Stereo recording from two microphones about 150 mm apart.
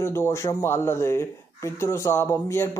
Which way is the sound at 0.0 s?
15° left (ahead or behind).